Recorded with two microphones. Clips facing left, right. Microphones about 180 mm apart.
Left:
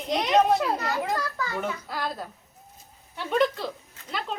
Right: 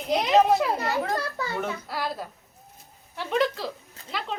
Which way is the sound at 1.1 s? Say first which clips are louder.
Right 1 dB; 30° right (ahead or behind).